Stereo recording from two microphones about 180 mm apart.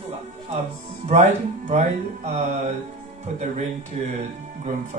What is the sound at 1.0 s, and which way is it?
Speech, 40° right (ahead or behind).